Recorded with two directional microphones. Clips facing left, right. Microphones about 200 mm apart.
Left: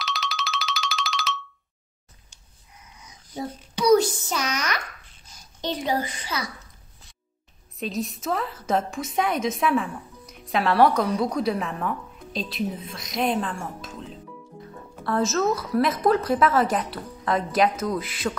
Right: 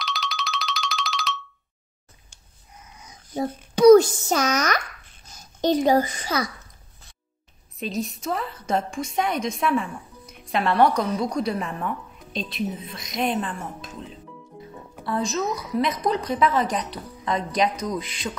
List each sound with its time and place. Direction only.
0.0 s music: centre (ahead or behind)
3.3 s a child's voice: 45° right (ahead or behind)
7.8 s a woman's voice: centre (ahead or behind)
15.3 s a woman's voice: 15° right (ahead or behind)
16.0 s a woman's voice: 5° left (ahead or behind)